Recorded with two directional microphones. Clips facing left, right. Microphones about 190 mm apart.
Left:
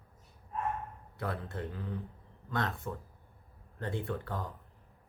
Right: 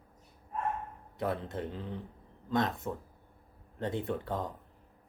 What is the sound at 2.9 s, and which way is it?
Speech, 20° right (ahead or behind).